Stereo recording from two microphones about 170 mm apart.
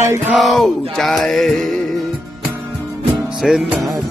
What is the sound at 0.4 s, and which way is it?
Music, centre (ahead or behind).